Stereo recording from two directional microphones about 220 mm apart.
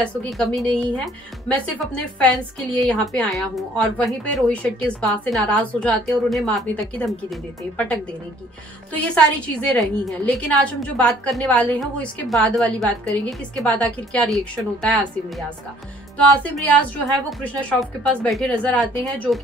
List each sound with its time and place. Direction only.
0.0 s a woman's voice: 5° left (ahead or behind)
9.0 s a woman's voice: 5° left (ahead or behind)
16.4 s a woman's voice: 5° left (ahead or behind)